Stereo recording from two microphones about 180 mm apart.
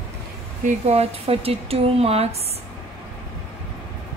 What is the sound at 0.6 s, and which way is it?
Speech, 35° right (ahead or behind).